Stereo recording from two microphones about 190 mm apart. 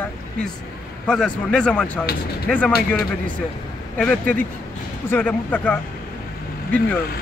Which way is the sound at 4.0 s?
5° left (ahead or behind).